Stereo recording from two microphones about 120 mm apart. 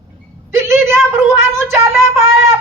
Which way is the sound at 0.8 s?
20° right (ahead or behind).